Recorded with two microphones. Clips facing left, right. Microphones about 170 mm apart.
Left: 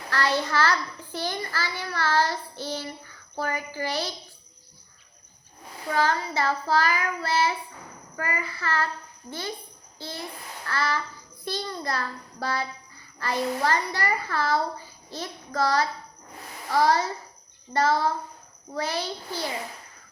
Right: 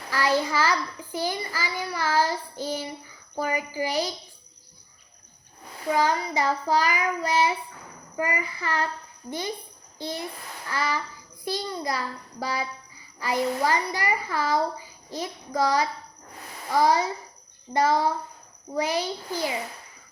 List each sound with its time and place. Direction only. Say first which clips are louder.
0.1 s a child's voice: right 2 dB; 10° right (ahead or behind)
5.9 s a child's voice: right 2 dB; 15° right (ahead or behind)
10.0 s a child's voice: right 4 dB; 15° right (ahead or behind)